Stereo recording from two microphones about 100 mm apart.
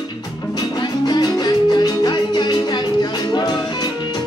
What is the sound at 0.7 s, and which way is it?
Music, 40° left (ahead or behind).